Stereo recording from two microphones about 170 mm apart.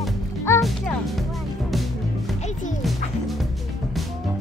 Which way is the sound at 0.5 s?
15° left (ahead or behind).